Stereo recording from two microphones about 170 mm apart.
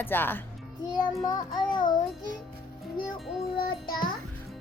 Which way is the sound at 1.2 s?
25° left (ahead or behind).